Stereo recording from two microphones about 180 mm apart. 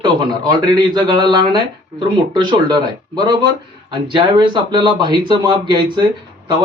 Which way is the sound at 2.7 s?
25° right (ahead or behind).